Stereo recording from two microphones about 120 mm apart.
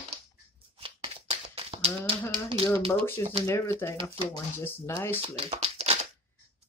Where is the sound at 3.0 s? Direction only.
55° right (ahead or behind).